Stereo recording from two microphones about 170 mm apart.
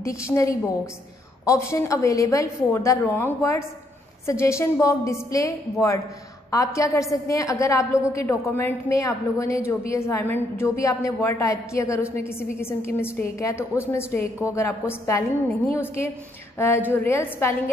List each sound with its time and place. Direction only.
0.3 s a woman's voice: 20° left (ahead or behind)